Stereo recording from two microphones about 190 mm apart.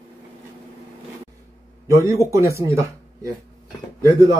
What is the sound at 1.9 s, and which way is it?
Speech, 15° right (ahead or behind).